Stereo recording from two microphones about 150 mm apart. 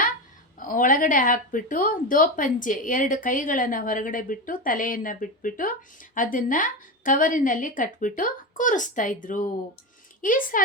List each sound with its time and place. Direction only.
0.6 s a woman's voice: 65° left (ahead or behind)